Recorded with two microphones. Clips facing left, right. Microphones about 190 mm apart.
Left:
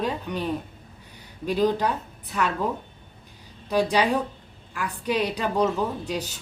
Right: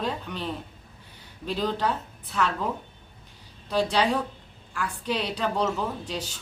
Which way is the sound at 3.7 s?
10° left (ahead or behind).